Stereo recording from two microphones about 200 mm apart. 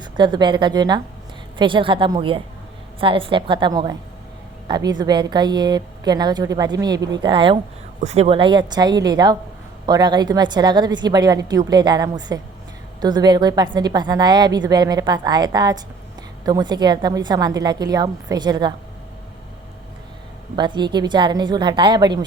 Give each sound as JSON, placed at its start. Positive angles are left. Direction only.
{"t": 0.0, "sound": "a woman's voice", "side_deg": -20}
{"t": 20.6, "sound": "a woman's voice", "side_deg": -20}